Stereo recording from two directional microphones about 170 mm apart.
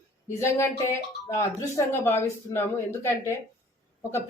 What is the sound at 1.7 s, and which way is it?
Speech, 15° left (ahead or behind).